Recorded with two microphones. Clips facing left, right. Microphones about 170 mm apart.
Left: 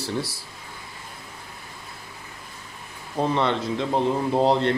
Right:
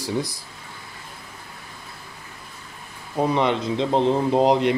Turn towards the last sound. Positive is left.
turn(degrees=-15)  # may be behind; listen again after turning